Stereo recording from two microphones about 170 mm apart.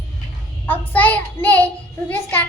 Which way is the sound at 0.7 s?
10° left (ahead or behind).